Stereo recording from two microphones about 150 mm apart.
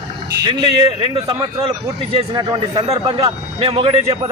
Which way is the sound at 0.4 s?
30° right (ahead or behind).